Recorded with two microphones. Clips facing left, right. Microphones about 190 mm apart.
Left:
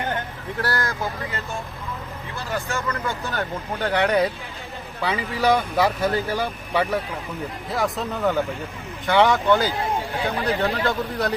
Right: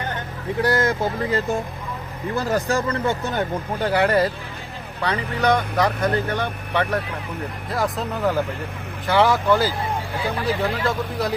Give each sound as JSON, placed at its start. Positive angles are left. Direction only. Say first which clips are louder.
{"t": 0.6, "sound": "speech", "louder": "right 6 dB", "side_deg": -20}
{"t": 2.3, "sound": "speech", "louder": "right 7 dB", "side_deg": -40}
{"t": 3.8, "sound": "speech", "louder": "right 1 dB", "side_deg": -10}